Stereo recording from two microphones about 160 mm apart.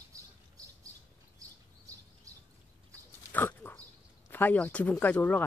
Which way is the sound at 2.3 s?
20° right (ahead or behind).